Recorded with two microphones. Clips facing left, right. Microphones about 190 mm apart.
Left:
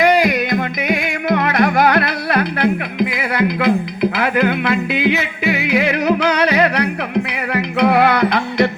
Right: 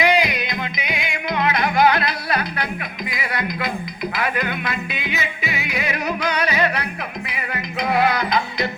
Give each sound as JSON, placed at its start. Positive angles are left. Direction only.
{"t": 0.0, "sound": "music", "side_deg": 50}